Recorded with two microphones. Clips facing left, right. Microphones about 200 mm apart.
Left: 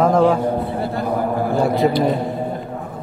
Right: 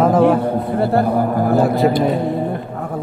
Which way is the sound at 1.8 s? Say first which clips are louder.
Right 2 dB; 60° right (ahead or behind).